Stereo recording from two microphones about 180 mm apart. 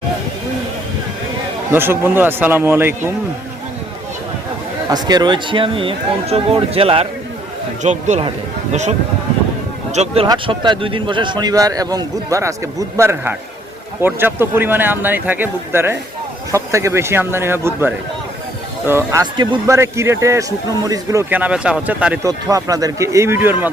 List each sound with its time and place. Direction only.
1.7 s a man's voice: 10° right (ahead or behind)
4.9 s a man's voice: 25° right (ahead or behind)
22.3 s a man's voice: 20° right (ahead or behind)